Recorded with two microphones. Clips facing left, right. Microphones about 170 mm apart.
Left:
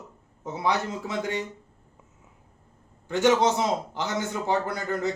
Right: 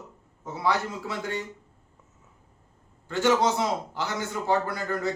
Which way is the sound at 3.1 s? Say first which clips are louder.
Left 2 dB; 20° left (ahead or behind).